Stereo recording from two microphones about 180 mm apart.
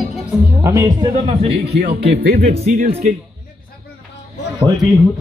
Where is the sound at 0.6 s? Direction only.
15° right (ahead or behind).